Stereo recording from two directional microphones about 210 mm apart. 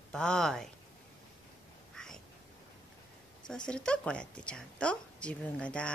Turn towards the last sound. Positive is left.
turn(degrees=5)  # may be behind; listen again after turning